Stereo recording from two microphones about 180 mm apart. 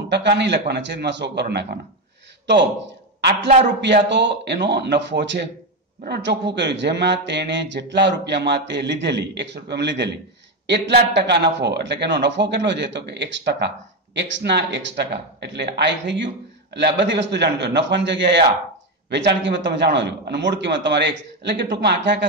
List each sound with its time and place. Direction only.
0.1 s speech: 75° right (ahead or behind)
3.2 s a woman's voice: 70° right (ahead or behind)